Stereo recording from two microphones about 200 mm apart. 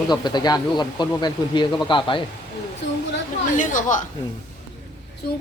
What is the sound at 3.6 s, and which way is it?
Speech, 40° left (ahead or behind).